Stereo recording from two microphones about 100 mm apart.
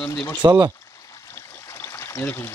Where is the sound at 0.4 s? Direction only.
40° right (ahead or behind).